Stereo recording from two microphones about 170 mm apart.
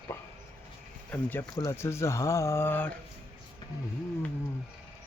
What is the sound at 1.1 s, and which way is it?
Speech, 10° left (ahead or behind).